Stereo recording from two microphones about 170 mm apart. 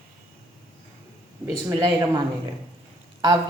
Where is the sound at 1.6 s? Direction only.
20° right (ahead or behind).